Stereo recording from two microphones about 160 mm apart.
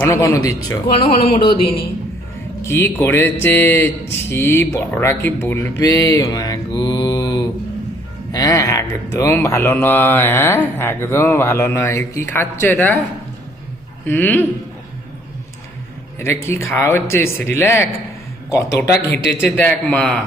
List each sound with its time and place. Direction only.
0.0 s music: 15° left (ahead or behind)
0.9 s speech: 35° left (ahead or behind)
2.6 s music: 15° left (ahead or behind)
14.0 s music: 10° left (ahead or behind)
16.1 s music: 15° left (ahead or behind)